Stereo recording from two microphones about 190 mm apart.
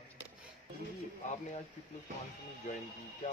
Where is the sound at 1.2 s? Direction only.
35° left (ahead or behind).